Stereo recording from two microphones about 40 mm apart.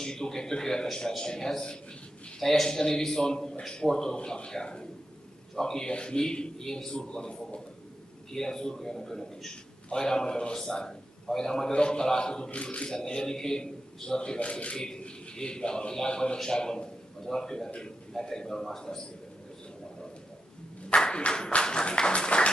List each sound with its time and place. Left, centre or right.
0.0 s a man's voice: centre
8.3 s a man's voice: centre
20.9 s clapping: left
21.6 s a man's voice: centre